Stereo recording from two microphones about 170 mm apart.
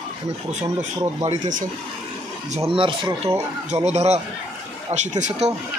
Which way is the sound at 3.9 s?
40° right (ahead or behind).